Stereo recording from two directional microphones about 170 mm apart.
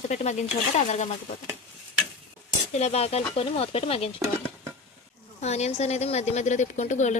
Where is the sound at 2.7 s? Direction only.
40° left (ahead or behind).